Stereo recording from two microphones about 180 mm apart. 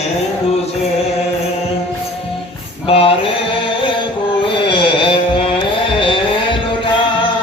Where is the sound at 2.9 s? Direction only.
30° left (ahead or behind).